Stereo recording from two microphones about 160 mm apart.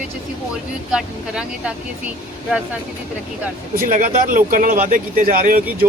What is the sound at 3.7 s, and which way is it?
Speech, 60° right (ahead or behind).